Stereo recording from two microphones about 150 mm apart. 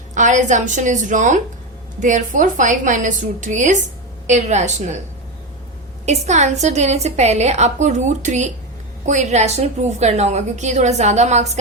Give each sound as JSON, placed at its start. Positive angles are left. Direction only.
{"t": 0.1, "sound": "a woman's voice", "side_deg": -55}
{"t": 6.1, "sound": "a woman's voice", "side_deg": -50}